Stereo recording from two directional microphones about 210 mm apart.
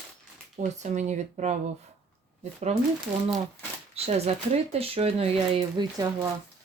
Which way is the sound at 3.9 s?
30° right (ahead or behind).